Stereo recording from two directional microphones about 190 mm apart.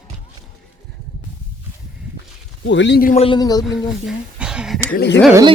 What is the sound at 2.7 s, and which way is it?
Speech, 70° left (ahead or behind).